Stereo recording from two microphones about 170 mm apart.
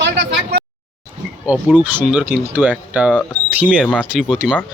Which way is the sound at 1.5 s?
10° right (ahead or behind).